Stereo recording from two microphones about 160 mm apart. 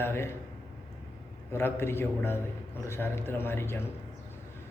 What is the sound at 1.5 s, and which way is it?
A man's voice, 15° left (ahead or behind).